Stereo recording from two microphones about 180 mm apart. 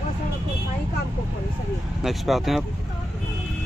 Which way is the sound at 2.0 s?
Centre (ahead or behind).